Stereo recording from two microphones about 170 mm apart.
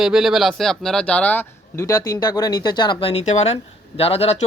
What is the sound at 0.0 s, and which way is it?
A man's voice, 5° right (ahead or behind).